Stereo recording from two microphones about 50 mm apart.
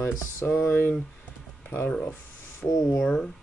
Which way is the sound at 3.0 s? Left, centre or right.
Left.